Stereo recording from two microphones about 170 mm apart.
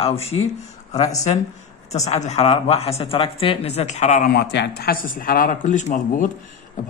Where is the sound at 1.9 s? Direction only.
40° left (ahead or behind).